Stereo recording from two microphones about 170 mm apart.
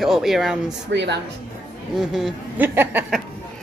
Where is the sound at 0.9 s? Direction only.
90° right.